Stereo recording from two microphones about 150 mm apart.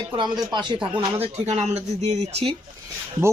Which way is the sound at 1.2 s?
45° right (ahead or behind).